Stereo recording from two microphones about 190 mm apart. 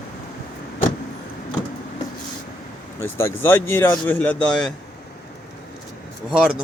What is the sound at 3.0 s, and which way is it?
Speech, 15° left (ahead or behind).